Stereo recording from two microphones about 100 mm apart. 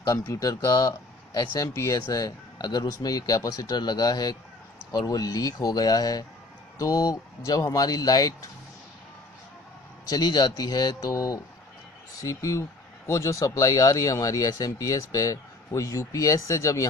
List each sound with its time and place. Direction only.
0.0 s speech: 35° left (ahead or behind)
10.0 s speech: 40° left (ahead or behind)